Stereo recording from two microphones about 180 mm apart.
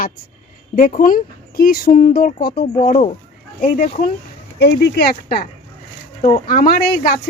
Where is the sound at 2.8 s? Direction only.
40° left (ahead or behind).